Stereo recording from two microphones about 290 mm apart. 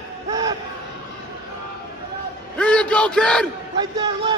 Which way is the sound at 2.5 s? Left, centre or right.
Centre.